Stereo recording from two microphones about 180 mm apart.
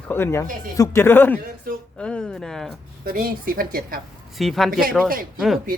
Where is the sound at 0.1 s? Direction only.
15° left (ahead or behind).